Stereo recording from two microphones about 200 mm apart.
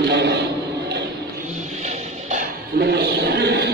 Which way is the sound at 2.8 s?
55° right (ahead or behind).